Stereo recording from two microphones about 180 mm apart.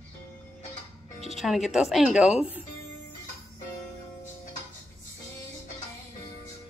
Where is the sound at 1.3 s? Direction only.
Centre (ahead or behind).